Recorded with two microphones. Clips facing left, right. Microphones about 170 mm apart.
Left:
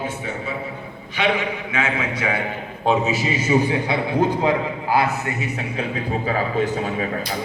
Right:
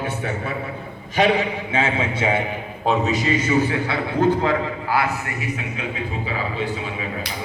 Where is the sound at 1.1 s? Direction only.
35° right (ahead or behind).